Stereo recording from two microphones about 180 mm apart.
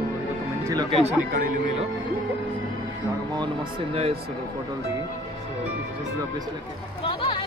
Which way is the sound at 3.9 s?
30° right (ahead or behind).